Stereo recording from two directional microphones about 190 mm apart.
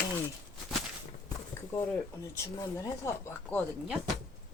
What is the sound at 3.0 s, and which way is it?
Speech, 15° left (ahead or behind).